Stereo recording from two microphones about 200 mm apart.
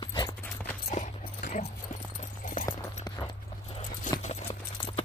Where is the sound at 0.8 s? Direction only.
35° left (ahead or behind).